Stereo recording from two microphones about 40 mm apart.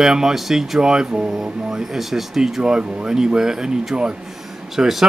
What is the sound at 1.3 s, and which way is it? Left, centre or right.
Speech, centre.